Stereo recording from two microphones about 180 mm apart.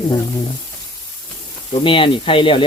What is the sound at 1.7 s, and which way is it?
Speech, 30° left (ahead or behind).